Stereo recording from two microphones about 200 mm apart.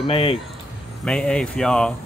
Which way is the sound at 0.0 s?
25° left (ahead or behind).